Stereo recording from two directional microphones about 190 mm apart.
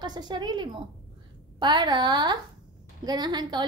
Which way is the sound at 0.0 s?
20° right (ahead or behind).